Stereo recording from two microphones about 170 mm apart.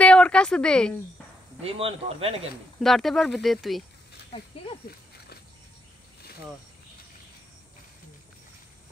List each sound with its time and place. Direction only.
0.0 s a sound: 5° left (ahead or behind)
1.6 s speech: 35° right (ahead or behind)
2.8 s speech: centre (ahead or behind)
4.8 s dog: 65° left (ahead or behind)